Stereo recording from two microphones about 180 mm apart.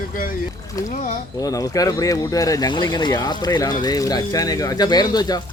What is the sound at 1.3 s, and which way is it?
Speech, 20° left (ahead or behind).